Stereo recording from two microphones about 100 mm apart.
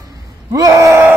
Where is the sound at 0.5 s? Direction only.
35° right (ahead or behind).